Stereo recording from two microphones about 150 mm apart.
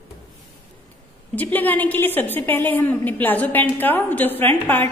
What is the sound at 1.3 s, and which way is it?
A woman's voice, 10° left (ahead or behind).